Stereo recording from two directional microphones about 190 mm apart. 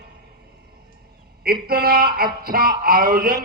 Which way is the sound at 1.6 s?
50° right (ahead or behind).